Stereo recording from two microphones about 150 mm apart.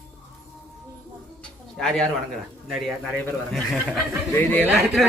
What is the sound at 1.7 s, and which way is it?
A man's voice, 5° left (ahead or behind).